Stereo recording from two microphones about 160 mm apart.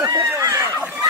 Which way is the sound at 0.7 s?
15° right (ahead or behind).